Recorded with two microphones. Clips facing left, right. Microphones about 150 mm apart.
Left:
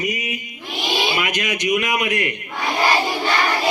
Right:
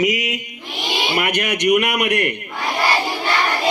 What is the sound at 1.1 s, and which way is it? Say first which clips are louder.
Speech: right 3 dB; 60° right (ahead or behind).